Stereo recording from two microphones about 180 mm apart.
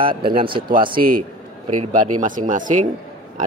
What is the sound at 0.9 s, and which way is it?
A man's voice, 50° right (ahead or behind).